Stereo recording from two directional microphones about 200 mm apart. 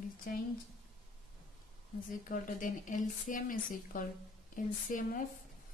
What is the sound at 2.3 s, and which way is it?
A woman's voice, 40° left (ahead or behind).